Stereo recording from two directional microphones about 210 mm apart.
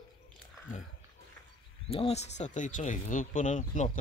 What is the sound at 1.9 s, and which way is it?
Speech, 30° left (ahead or behind).